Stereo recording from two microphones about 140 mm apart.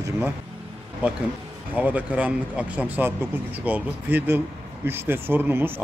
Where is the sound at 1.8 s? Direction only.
10° right (ahead or behind).